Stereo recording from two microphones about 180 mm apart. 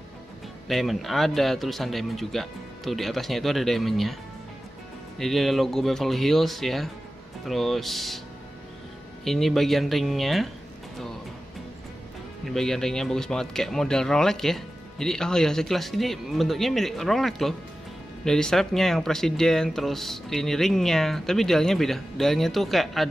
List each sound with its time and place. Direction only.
0.7 s speech: centre (ahead or behind)
5.2 s speech: centre (ahead or behind)
9.2 s speech: centre (ahead or behind)
12.4 s speech: 5° left (ahead or behind)